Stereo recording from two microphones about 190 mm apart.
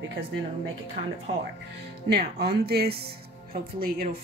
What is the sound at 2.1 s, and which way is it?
A woman's voice, 55° right (ahead or behind).